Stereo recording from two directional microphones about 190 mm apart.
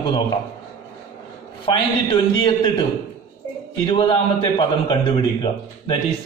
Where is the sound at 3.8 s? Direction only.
25° left (ahead or behind).